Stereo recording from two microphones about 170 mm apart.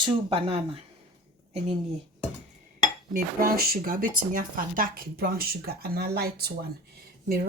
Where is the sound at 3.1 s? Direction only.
60° right (ahead or behind).